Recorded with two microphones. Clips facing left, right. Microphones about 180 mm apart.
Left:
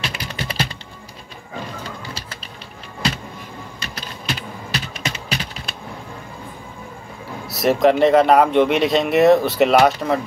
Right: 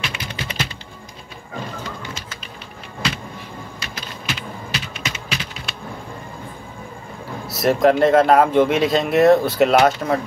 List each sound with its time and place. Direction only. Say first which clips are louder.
0.0 s typing: left 1 dB; 35° left (ahead or behind)
3.8 s typing: left 2 dB; 35° left (ahead or behind)
7.4 s speech: even; centre (ahead or behind)